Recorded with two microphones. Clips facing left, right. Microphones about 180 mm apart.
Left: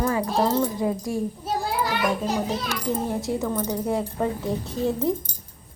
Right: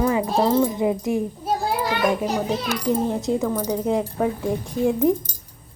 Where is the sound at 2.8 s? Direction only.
15° right (ahead or behind).